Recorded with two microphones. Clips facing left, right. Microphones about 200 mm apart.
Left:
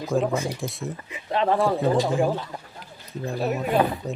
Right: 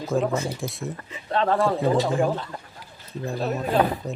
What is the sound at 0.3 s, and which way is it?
Speech, 15° left (ahead or behind).